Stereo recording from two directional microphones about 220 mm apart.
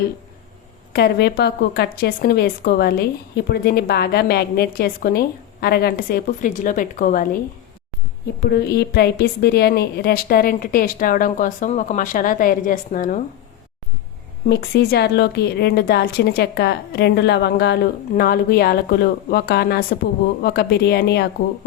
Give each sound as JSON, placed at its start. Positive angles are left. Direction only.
{"t": 0.9, "sound": "a woman's voice", "side_deg": 45}
{"t": 8.4, "sound": "a woman's voice", "side_deg": 45}
{"t": 14.5, "sound": "a woman's voice", "side_deg": 45}